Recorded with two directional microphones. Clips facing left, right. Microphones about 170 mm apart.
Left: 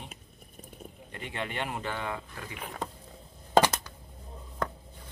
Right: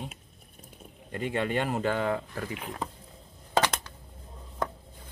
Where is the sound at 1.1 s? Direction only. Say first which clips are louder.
Right 8 dB; 45° right (ahead or behind).